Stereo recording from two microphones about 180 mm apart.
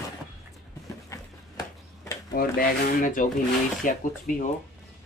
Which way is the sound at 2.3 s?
50° left (ahead or behind).